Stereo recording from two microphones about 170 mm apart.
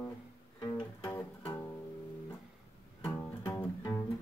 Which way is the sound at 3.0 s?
15° left (ahead or behind).